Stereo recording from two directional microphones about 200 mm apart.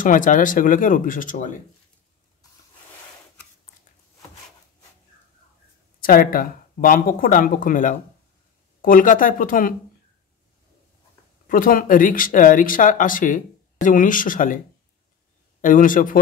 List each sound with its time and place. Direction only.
0.0 s speech: 40° left (ahead or behind)
5.9 s speech: 45° left (ahead or behind)
11.4 s speech: 45° left (ahead or behind)
15.6 s speech: 40° left (ahead or behind)